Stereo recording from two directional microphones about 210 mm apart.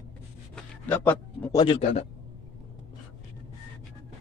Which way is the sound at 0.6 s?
10° left (ahead or behind).